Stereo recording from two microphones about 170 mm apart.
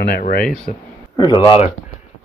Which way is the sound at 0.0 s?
55° left (ahead or behind).